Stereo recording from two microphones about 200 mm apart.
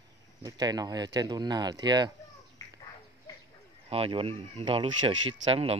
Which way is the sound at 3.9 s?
30° right (ahead or behind).